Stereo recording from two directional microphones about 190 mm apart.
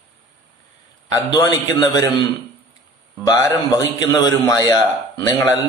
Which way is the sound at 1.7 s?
20° left (ahead or behind).